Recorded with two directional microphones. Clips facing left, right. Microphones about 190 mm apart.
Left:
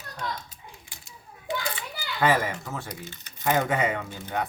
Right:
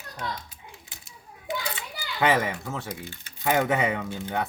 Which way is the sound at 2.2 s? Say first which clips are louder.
Even; 20° right (ahead or behind).